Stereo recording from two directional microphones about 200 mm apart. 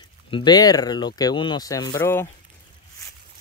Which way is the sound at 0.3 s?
20° left (ahead or behind).